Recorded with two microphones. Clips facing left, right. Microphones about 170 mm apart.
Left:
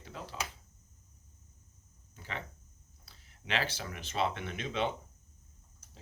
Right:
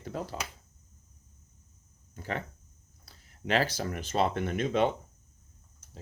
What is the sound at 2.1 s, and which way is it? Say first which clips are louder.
Speech: right 7 dB; 45° right (ahead or behind).